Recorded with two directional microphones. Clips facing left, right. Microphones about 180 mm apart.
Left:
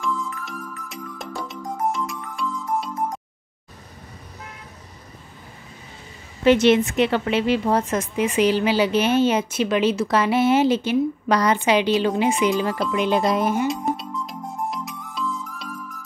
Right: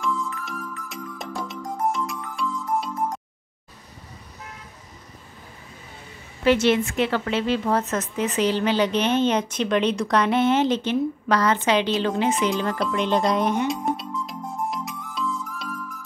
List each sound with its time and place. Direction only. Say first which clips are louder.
0.5 s music: right 1 dB; centre (ahead or behind)
6.4 s a woman's voice: left 3 dB; 20° left (ahead or behind)
12.4 s music: left 2 dB; 5° left (ahead or behind)